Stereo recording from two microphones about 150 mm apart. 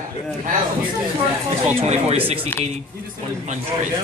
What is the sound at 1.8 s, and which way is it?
Speech, 45° right (ahead or behind).